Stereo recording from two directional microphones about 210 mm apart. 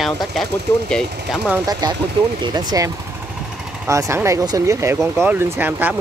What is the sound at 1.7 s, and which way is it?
Speech, 20° right (ahead or behind).